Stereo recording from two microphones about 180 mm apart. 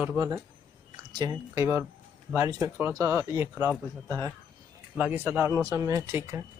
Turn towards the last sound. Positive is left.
turn(degrees=-15)  # may be behind; listen again after turning